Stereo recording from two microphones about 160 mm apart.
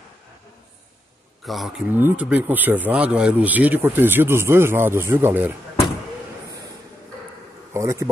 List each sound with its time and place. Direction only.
1.4 s speech: centre (ahead or behind)
7.7 s speech: 20° right (ahead or behind)